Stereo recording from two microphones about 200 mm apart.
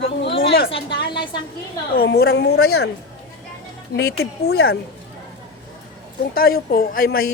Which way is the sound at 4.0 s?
55° left (ahead or behind).